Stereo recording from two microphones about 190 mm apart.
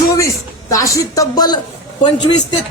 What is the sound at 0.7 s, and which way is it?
Speech, 15° left (ahead or behind).